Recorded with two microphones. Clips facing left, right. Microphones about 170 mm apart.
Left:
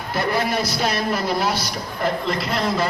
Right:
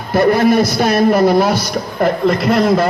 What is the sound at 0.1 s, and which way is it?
A man's voice, 50° right (ahead or behind).